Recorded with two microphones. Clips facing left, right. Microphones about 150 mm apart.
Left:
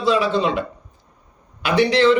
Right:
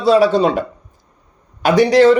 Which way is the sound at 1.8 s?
40° right (ahead or behind).